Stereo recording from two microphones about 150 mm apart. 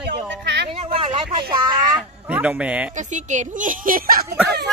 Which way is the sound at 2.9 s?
55° right (ahead or behind).